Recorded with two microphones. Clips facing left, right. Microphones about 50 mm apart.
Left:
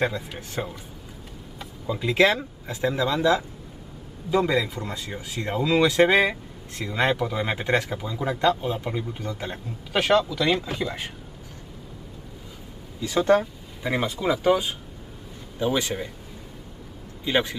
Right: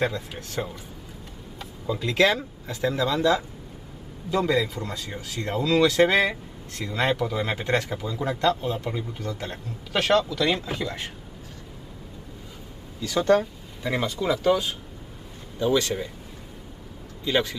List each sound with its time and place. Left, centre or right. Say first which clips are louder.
0.0 s speech: left 1 dB; centre
13.0 s speech: left 1 dB; left
17.2 s a man's voice: even; centre